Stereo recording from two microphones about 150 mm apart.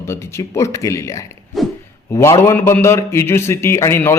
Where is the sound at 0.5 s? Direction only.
20° left (ahead or behind).